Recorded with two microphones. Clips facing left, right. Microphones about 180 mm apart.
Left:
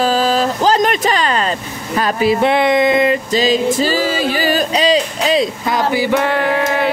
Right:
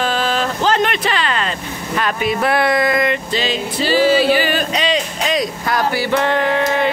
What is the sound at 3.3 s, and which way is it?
Music, 40° left (ahead or behind).